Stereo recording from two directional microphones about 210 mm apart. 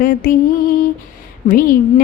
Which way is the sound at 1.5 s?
40° left (ahead or behind).